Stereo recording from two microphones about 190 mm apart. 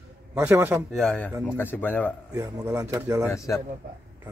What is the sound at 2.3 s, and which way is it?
Speech, 15° right (ahead or behind).